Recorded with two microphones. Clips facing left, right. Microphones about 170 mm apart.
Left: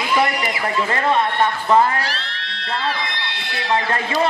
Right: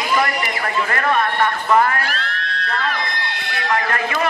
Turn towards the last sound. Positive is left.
turn(degrees=25)  # may be behind; listen again after turning